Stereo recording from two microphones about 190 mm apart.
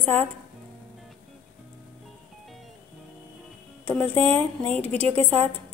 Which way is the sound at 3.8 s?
5° left (ahead or behind).